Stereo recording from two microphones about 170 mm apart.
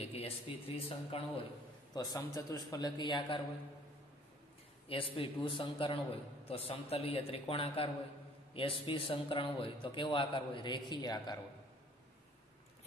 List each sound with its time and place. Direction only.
0.0 s a man's voice: 35° left (ahead or behind)
2.0 s a man's voice: 20° left (ahead or behind)
4.8 s a man's voice: 30° left (ahead or behind)